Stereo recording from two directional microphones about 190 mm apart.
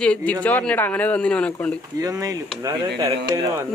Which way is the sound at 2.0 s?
20° right (ahead or behind).